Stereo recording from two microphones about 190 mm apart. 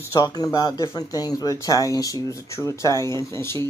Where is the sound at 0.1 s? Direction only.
20° left (ahead or behind).